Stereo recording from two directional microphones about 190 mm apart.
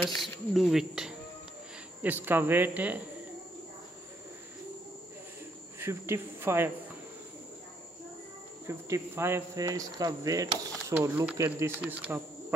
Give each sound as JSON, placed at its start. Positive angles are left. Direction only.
{"t": 0.0, "sound": "speech", "side_deg": 0}
{"t": 5.8, "sound": "speech", "side_deg": -15}
{"t": 8.6, "sound": "speech", "side_deg": -15}